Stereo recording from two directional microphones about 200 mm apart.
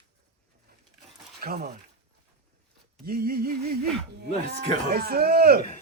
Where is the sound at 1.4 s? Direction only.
50° right (ahead or behind).